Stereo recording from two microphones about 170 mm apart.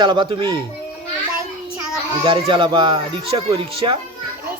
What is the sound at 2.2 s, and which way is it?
Speech, 30° right (ahead or behind).